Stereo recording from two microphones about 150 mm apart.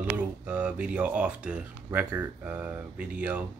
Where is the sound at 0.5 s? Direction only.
10° right (ahead or behind).